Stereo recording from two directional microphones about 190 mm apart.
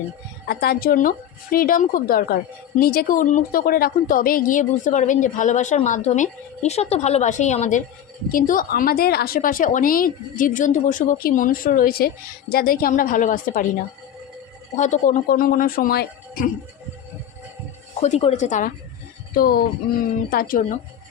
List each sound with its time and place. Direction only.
0.4 s speech: 55° left (ahead or behind)
18.0 s speech: 35° left (ahead or behind)
19.3 s speech: 50° left (ahead or behind)